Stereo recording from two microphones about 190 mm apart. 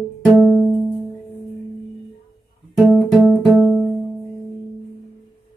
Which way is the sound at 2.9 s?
Centre (ahead or behind).